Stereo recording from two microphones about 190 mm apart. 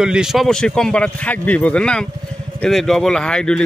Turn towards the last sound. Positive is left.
turn(degrees=5)  # may be behind; listen again after turning